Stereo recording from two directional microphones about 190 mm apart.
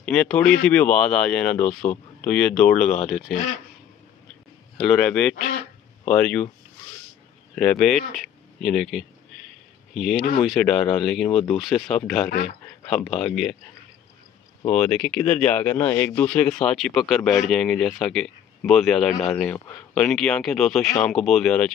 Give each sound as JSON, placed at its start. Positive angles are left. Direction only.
{"t": 0.0, "sound": "speech", "side_deg": 5}
{"t": 4.8, "sound": "speech", "side_deg": 5}
{"t": 7.5, "sound": "speech", "side_deg": 5}
{"t": 10.4, "sound": "speech", "side_deg": 0}
{"t": 12.3, "sound": "speech", "side_deg": 55}
{"t": 12.8, "sound": "speech", "side_deg": 5}
{"t": 14.7, "sound": "speech", "side_deg": 5}